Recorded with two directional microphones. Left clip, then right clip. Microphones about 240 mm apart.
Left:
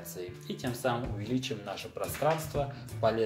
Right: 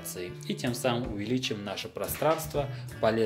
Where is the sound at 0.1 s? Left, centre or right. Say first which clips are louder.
Right 4 dB; right.